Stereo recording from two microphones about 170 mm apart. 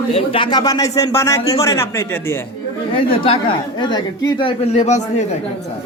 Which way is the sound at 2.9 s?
30° left (ahead or behind).